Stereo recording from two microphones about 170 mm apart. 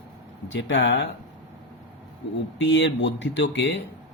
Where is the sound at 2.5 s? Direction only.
90° left.